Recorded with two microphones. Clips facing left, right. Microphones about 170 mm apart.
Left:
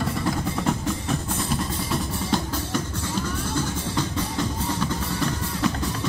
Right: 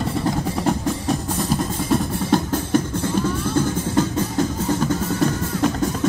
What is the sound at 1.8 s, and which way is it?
Music, 50° right (ahead or behind).